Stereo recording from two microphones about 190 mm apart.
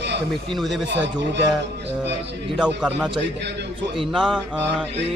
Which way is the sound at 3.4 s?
65° right (ahead or behind).